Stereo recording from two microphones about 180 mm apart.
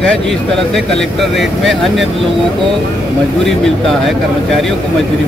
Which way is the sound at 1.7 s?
Centre (ahead or behind).